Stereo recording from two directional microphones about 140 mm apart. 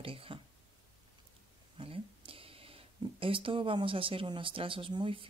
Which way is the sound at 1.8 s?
40° right (ahead or behind).